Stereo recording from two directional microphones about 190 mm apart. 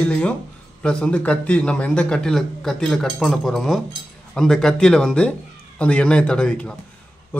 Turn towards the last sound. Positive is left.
turn(degrees=5)  # may be behind; listen again after turning